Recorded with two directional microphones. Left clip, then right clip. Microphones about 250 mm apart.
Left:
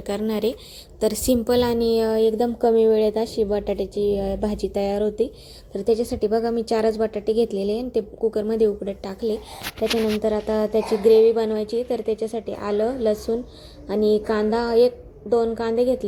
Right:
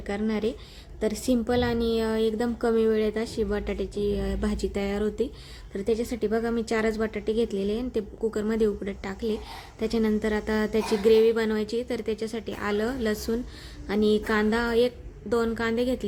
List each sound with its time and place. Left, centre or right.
0.1 s a woman's voice: centre
12.7 s a woman's voice: right
14.3 s a woman's voice: centre
14.8 s a woman's voice: right
15.4 s a woman's voice: centre